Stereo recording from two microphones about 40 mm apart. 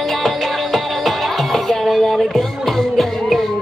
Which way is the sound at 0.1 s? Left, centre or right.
Centre.